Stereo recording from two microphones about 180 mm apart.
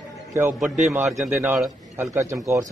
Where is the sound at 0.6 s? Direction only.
5° right (ahead or behind).